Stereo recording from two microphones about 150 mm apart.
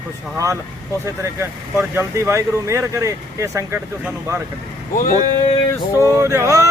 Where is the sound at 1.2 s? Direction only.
15° right (ahead or behind).